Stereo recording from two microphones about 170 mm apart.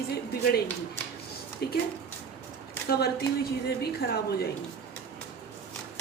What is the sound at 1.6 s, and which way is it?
Speech, 70° left (ahead or behind).